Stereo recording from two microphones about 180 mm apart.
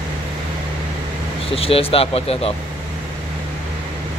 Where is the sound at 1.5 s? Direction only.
30° left (ahead or behind).